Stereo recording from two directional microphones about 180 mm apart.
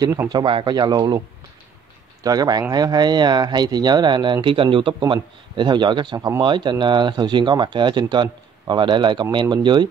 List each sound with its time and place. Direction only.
0.0 s speech: 20° right (ahead or behind)
2.2 s speech: 20° right (ahead or behind)